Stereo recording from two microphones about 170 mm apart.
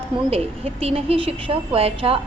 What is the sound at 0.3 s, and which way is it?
A woman's voice, 35° right (ahead or behind).